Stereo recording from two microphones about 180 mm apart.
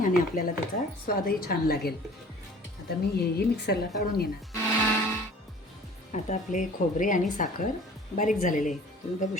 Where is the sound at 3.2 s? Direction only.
60° left (ahead or behind).